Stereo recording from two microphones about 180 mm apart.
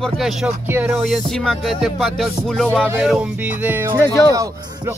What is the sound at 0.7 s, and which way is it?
Music, 10° right (ahead or behind).